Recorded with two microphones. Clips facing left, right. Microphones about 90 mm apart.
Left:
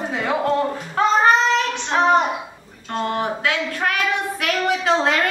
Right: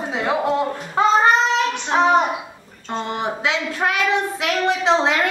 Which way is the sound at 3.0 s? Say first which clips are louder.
Left 2 dB; 20° right (ahead or behind).